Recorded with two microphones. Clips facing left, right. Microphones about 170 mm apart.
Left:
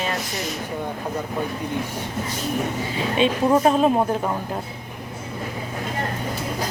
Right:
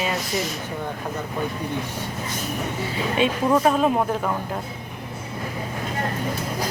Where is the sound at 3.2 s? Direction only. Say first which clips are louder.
Left 2 dB; 25° left (ahead or behind).